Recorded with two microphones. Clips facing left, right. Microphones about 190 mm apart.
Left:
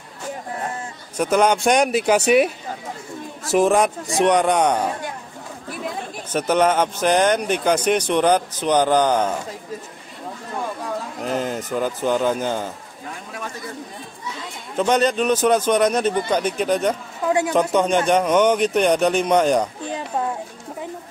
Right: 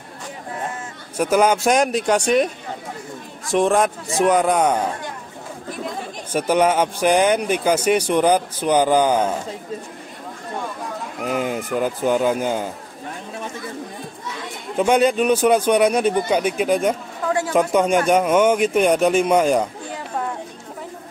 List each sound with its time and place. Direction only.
1.1 s speech: 5° right (ahead or behind)
3.5 s speech: centre (ahead or behind)
6.3 s speech: 10° right (ahead or behind)
11.2 s speech: 10° right (ahead or behind)
14.8 s speech: 10° right (ahead or behind)
17.3 s speech: 15° left (ahead or behind)
17.6 s speech: 10° right (ahead or behind)